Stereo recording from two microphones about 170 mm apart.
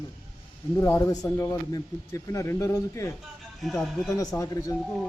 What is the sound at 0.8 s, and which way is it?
Speech, 15° left (ahead or behind).